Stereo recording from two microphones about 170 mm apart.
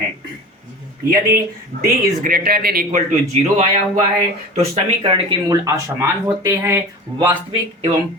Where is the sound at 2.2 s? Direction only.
60° right (ahead or behind).